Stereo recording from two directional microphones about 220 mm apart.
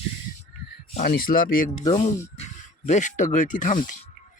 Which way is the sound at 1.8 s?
20° left (ahead or behind).